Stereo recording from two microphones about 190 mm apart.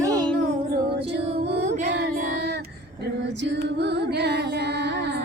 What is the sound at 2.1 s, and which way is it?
Female singing, 55° right (ahead or behind).